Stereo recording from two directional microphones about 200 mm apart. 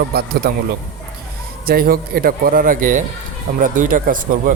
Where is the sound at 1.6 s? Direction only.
50° right (ahead or behind).